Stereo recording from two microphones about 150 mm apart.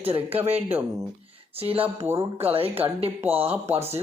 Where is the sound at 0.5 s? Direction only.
10° right (ahead or behind).